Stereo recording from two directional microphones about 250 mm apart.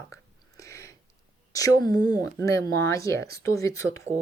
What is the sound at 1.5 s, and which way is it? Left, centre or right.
Speech, centre.